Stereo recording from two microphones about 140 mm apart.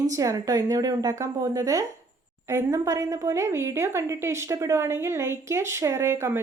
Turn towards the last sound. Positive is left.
turn(degrees=-20)  # may be behind; listen again after turning